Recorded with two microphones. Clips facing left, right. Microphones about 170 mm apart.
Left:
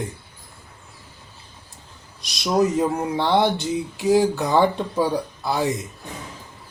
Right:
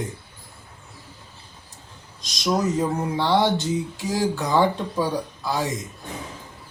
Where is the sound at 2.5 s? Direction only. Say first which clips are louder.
Left 3 dB; 15° left (ahead or behind).